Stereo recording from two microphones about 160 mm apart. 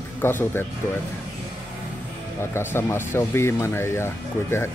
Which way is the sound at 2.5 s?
15° left (ahead or behind).